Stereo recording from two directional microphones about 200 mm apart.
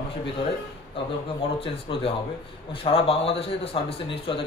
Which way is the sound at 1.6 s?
30° left (ahead or behind).